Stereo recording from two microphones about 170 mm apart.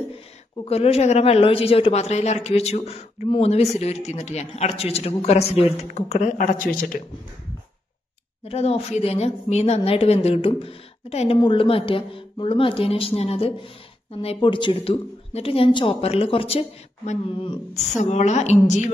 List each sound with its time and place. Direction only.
0.7 s speech: 35° left (ahead or behind); by 7.0 s 55° left (ahead or behind)
8.5 s speech: 35° left (ahead or behind)